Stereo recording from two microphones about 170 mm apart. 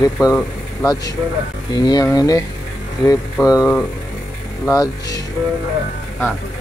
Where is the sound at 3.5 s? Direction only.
20° left (ahead or behind).